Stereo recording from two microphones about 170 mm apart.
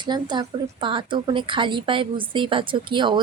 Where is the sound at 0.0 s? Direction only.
25° right (ahead or behind).